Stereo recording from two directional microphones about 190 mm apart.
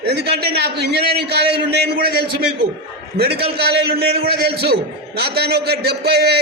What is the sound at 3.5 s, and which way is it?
A man's voice, 55° right (ahead or behind).